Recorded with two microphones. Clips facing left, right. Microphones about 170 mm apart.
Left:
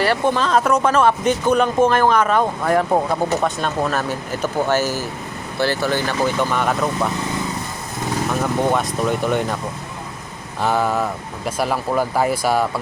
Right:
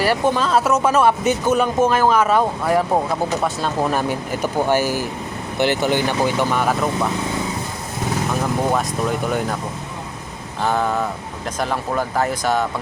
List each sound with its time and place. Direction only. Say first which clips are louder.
0.0 s speech: even; 10° right (ahead or behind)
8.3 s speech: left 2 dB; centre (ahead or behind)
10.6 s speech: left 1 dB; centre (ahead or behind)